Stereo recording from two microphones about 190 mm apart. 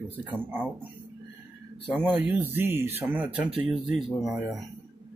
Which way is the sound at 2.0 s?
10° right (ahead or behind).